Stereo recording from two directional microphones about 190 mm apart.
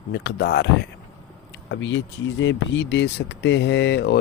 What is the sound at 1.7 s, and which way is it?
Speech, 75° left (ahead or behind).